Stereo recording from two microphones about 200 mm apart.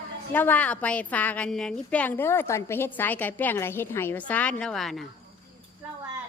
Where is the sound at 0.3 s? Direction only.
10° left (ahead or behind).